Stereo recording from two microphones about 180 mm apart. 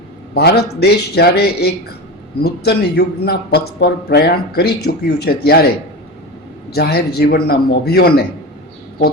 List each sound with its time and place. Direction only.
0.3 s a man's voice: 65° left (ahead or behind)
6.7 s a man's voice: 60° left (ahead or behind)